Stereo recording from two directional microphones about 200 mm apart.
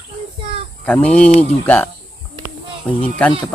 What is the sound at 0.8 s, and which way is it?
Speech, 5° left (ahead or behind).